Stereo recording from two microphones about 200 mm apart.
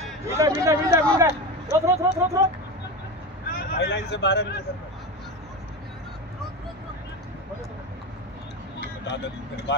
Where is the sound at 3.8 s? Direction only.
60° left (ahead or behind).